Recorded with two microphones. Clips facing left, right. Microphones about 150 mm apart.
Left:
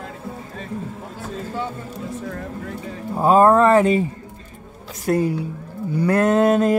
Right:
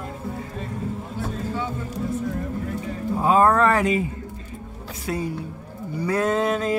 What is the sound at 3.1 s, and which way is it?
Speech, 35° left (ahead or behind).